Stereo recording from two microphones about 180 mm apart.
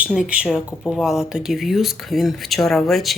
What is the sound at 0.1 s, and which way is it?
Speech, 5° right (ahead or behind).